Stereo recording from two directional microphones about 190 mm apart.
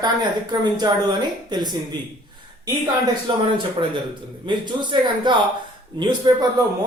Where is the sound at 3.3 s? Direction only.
25° right (ahead or behind).